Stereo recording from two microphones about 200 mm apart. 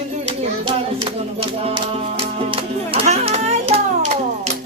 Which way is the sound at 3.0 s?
30° right (ahead or behind).